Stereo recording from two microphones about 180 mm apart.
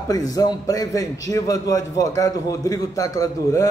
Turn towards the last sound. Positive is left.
turn(degrees=20)  # may be behind; listen again after turning